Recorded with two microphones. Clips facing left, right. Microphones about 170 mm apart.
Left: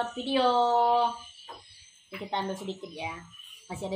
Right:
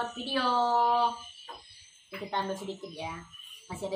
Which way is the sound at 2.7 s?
20° left (ahead or behind).